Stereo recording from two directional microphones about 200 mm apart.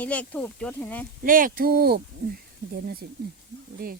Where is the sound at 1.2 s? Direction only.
45° right (ahead or behind).